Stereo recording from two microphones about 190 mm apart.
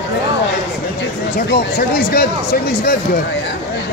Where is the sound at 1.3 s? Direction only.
50° left (ahead or behind).